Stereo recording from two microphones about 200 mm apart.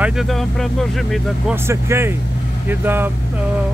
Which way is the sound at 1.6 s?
15° right (ahead or behind).